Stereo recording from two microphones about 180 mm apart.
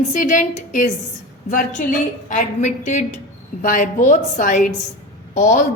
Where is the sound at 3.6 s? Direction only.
45° left (ahead or behind).